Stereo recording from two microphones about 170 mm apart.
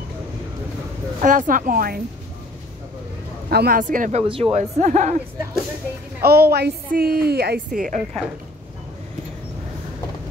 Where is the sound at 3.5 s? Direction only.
70° right (ahead or behind).